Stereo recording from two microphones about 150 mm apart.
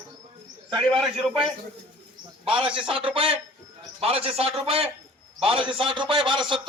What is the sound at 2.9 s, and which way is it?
A man's voice, 35° right (ahead or behind).